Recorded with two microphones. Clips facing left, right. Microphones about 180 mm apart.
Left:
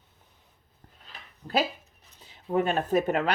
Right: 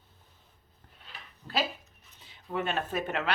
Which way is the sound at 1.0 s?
40° left (ahead or behind).